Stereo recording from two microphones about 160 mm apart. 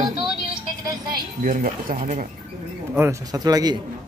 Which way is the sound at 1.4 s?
55° right (ahead or behind).